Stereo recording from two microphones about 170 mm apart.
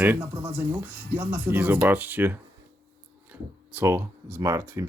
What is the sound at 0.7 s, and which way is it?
Speech, 10° right (ahead or behind).